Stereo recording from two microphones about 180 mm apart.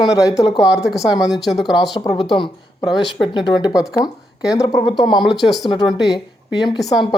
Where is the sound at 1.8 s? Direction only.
20° left (ahead or behind).